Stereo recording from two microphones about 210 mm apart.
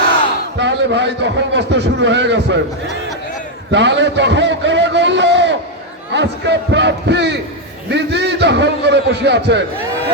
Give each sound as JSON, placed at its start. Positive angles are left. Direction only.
{"t": 0.6, "sound": "a man's voice", "side_deg": -55}
{"t": 3.7, "sound": "a man's voice", "side_deg": -60}